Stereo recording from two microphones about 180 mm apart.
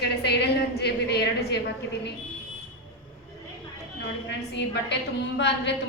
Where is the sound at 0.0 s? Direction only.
65° left (ahead or behind).